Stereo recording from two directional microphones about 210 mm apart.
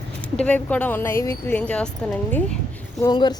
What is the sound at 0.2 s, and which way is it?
A woman's voice, 5° left (ahead or behind).